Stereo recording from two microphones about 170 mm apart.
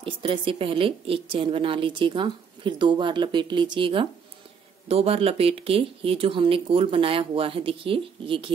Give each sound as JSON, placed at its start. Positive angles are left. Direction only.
{"t": 0.0, "sound": "a woman's voice", "side_deg": -30}